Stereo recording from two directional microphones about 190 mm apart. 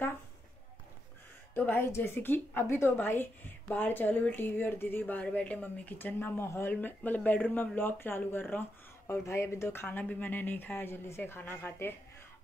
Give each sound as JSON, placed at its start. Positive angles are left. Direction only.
{"t": 1.5, "sound": "a woman's voice", "side_deg": 10}